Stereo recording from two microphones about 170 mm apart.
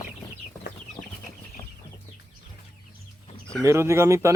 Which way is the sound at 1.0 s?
20° left (ahead or behind).